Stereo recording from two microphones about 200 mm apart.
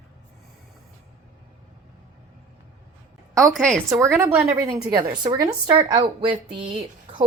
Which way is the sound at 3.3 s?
5° left (ahead or behind).